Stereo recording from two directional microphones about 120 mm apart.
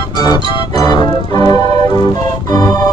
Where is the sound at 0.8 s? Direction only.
30° left (ahead or behind).